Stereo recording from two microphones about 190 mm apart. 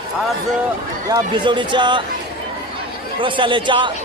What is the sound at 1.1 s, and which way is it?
Speech, 25° right (ahead or behind).